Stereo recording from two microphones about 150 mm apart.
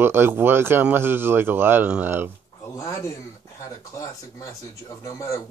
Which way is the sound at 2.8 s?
25° left (ahead or behind).